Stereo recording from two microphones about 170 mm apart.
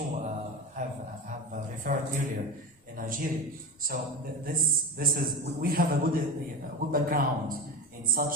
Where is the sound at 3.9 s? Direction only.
60° right (ahead or behind).